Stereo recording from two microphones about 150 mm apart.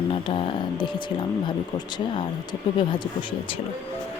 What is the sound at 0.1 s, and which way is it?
Speech, 35° left (ahead or behind).